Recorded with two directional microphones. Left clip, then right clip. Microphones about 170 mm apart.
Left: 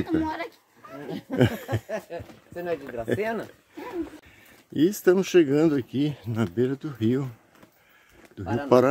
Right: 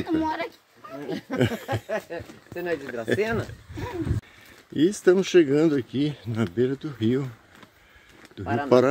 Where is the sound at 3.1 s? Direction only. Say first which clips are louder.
Right 3 dB; 5° left (ahead or behind).